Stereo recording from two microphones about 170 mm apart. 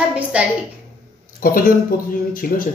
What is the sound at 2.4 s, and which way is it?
Speech, 55° left (ahead or behind).